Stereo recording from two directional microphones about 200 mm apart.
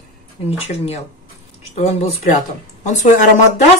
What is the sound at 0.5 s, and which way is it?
Speech, 30° left (ahead or behind).